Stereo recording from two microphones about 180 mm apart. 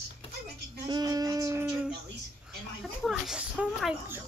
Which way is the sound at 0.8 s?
20° right (ahead or behind).